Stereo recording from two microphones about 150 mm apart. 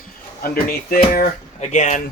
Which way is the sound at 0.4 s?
85° left.